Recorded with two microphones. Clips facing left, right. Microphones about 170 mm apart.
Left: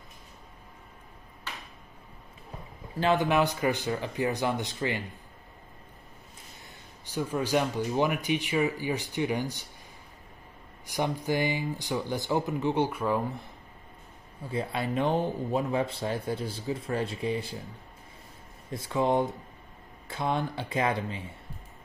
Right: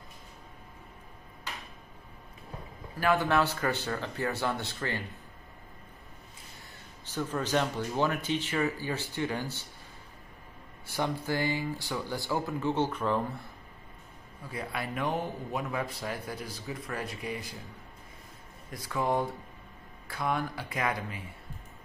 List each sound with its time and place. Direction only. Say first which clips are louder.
3.0 s speech: left 2 dB; 20° left (ahead or behind)
7.1 s speech: left 3 dB; 10° left (ahead or behind)
10.9 s speech: left 2 dB; 15° left (ahead or behind)
14.4 s speech: left 5 dB; 25° left (ahead or behind)
18.7 s speech: left 4 dB; 25° left (ahead or behind)